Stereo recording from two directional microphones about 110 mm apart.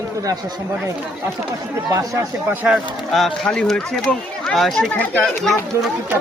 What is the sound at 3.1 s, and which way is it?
Speech, 5° left (ahead or behind).